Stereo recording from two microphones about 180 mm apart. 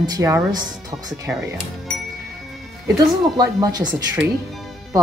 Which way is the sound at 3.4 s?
20° right (ahead or behind).